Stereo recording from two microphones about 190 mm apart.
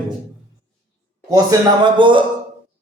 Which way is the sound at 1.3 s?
20° right (ahead or behind).